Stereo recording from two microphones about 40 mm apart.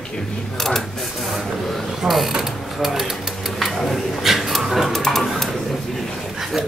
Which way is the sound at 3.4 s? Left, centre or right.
Centre.